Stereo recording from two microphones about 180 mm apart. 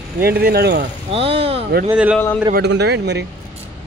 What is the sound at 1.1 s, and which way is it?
Speech, 30° right (ahead or behind).